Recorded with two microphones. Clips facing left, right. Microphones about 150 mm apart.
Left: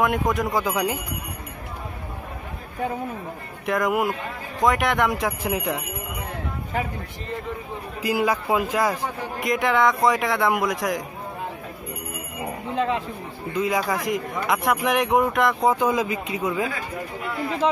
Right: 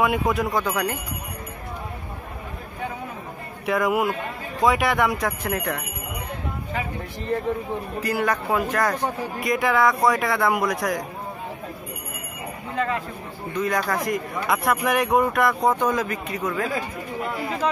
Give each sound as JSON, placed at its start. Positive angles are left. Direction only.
{"t": 0.0, "sound": "a man's voice", "side_deg": 0}
{"t": 3.6, "sound": "a man's voice", "side_deg": -5}
{"t": 8.0, "sound": "speech", "side_deg": 10}
{"t": 9.5, "sound": "a man's voice", "side_deg": 0}
{"t": 12.7, "sound": "speech", "side_deg": 25}
{"t": 13.6, "sound": "a man's voice", "side_deg": 5}